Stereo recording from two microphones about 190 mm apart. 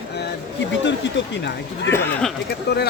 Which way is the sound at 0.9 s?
70° left (ahead or behind).